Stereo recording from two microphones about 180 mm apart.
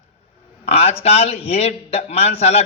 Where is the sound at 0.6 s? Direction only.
35° left (ahead or behind).